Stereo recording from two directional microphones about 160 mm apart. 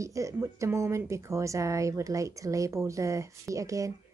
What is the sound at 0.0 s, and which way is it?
A woman's voice, 20° right (ahead or behind).